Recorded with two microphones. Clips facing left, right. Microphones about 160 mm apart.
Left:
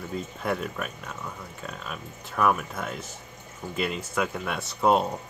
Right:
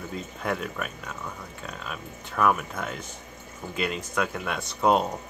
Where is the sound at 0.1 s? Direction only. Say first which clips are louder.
Left 1 dB; centre (ahead or behind).